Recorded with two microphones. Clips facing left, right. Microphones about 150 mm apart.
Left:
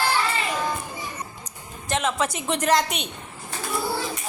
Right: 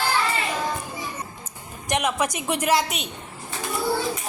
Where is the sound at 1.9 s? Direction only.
15° right (ahead or behind).